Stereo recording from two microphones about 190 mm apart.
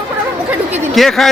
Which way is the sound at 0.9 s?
Centre (ahead or behind).